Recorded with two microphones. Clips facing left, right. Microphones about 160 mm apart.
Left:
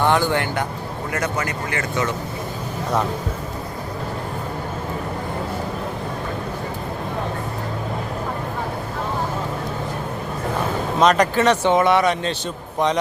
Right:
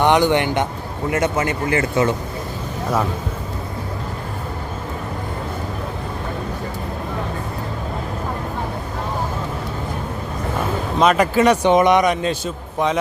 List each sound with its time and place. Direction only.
0.0 s a man's voice: 20° right (ahead or behind)
11.0 s speech: 5° right (ahead or behind)